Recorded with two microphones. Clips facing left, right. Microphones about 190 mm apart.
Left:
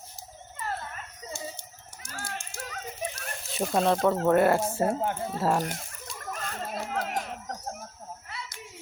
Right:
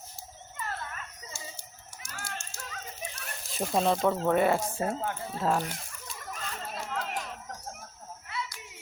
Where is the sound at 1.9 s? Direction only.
35° left (ahead or behind).